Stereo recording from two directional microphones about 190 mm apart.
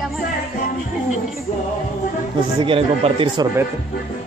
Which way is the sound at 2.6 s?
30° right (ahead or behind).